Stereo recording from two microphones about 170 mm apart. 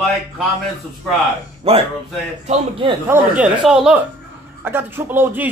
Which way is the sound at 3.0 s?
5° right (ahead or behind).